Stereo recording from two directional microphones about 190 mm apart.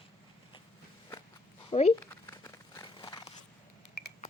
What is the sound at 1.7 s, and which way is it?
Speech, 35° left (ahead or behind).